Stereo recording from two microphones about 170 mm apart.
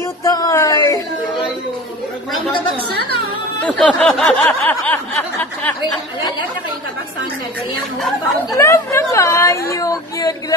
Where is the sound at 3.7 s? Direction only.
5° left (ahead or behind).